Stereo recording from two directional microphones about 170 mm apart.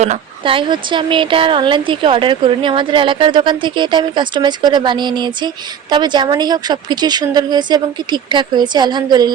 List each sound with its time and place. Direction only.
0.0 s speech: 35° right (ahead or behind)